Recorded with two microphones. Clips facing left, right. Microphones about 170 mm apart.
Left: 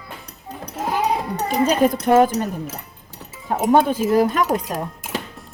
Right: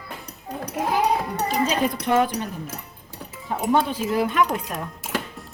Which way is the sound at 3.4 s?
50° left (ahead or behind).